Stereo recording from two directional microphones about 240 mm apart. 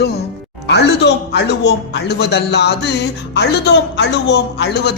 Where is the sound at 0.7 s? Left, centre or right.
Left.